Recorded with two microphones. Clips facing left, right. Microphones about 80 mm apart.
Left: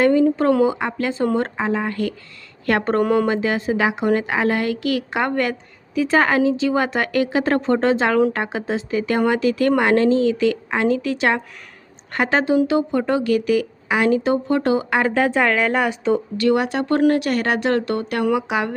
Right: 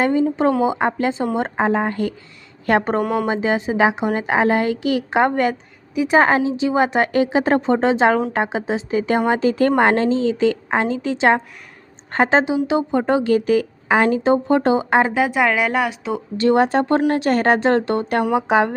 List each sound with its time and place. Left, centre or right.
0.0 s a woman's voice: right
1.5 s speech: right; by 3.0 s centre
3.0 s speech: centre
3.2 s speech: right
15.1 s speech: centre
16.4 s speech: right